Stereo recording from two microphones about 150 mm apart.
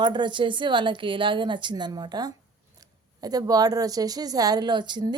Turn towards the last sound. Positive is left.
turn(degrees=-30)  # may be behind; listen again after turning